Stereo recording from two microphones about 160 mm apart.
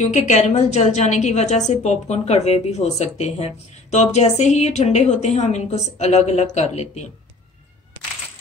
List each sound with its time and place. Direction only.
0.0 s a woman's voice: 45° left (ahead or behind)